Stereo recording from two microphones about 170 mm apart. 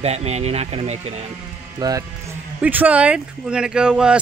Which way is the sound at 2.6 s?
10° right (ahead or behind).